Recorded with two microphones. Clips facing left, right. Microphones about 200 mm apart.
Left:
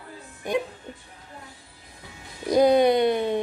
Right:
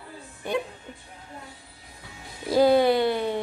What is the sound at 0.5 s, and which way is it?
Speech, 10° left (ahead or behind).